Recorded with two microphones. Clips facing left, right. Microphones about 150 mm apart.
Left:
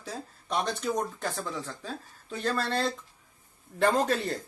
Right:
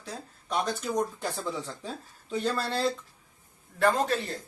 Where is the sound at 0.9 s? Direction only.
15° right (ahead or behind).